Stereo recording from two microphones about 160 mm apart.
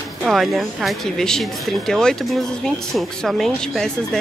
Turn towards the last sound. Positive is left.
turn(degrees=5)  # may be behind; listen again after turning